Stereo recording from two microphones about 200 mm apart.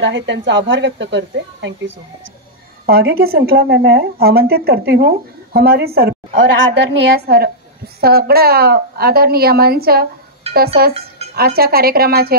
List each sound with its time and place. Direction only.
0.0 s speech: 65° right (ahead or behind)
2.9 s a woman's voice: 50° right (ahead or behind)
6.3 s a woman's voice: 75° right (ahead or behind)
7.2 s a woman's voice: 50° right (ahead or behind)
10.4 s dishes: 30° right (ahead or behind)
10.9 s music: 30° right (ahead or behind)
11.3 s a woman's voice: 50° right (ahead or behind)